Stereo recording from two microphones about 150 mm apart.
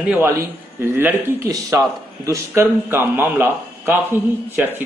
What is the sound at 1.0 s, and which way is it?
Speech, 20° right (ahead or behind).